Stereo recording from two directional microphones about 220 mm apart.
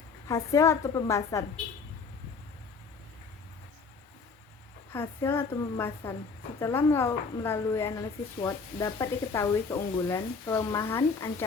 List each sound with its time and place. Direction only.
0.3 s a woman's voice: 15° left (ahead or behind)
4.9 s a woman's voice: 10° left (ahead or behind)